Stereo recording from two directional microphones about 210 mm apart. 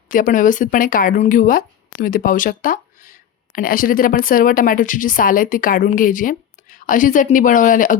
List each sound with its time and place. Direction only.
0.1 s speech: 40° left (ahead or behind)